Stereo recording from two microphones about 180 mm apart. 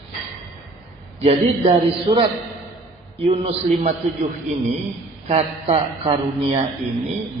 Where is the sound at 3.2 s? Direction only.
35° right (ahead or behind).